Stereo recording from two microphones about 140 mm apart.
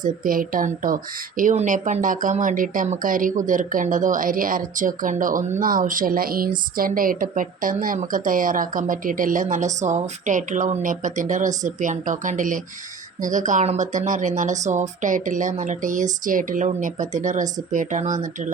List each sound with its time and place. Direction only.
0.0 s a woman's voice: 85° right; by 18.5 s 65° right (ahead or behind)